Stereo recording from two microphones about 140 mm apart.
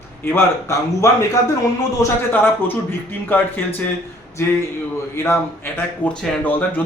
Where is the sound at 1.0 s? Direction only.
20° left (ahead or behind).